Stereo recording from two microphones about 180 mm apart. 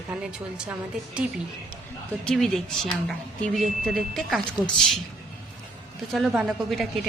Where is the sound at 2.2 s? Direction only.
5° left (ahead or behind).